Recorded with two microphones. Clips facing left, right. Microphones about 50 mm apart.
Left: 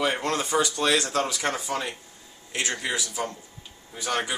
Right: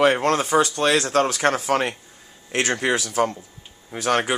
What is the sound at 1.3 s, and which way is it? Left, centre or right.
Speech, right.